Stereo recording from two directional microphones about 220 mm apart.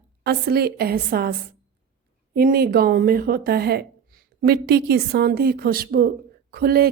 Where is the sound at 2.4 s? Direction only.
45° right (ahead or behind).